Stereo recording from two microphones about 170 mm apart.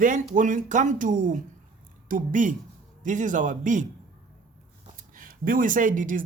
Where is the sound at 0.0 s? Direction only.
50° right (ahead or behind).